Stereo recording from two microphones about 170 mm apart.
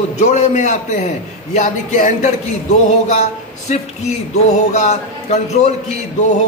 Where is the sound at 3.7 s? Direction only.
40° left (ahead or behind).